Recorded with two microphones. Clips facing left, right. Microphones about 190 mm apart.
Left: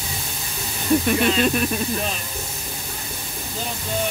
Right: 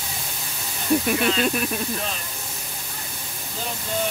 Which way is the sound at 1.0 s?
Centre (ahead or behind).